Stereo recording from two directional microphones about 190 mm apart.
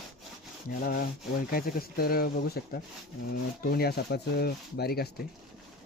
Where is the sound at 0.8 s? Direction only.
50° left (ahead or behind).